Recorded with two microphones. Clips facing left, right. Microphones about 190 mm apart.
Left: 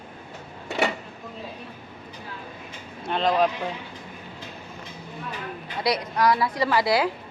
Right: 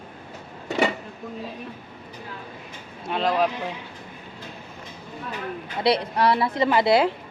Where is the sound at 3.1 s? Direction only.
5° right (ahead or behind).